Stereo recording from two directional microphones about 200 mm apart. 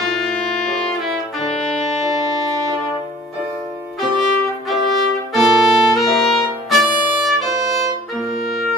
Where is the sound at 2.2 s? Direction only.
15° right (ahead or behind).